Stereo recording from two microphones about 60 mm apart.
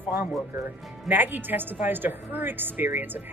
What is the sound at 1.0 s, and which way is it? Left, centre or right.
A woman's voice, right.